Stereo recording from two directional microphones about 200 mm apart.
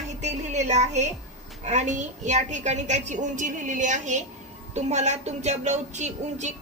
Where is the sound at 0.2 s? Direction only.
35° right (ahead or behind).